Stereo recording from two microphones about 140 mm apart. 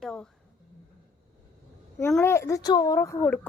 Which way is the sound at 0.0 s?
5° left (ahead or behind).